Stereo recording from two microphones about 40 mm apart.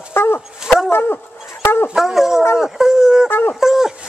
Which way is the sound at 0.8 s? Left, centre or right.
Left.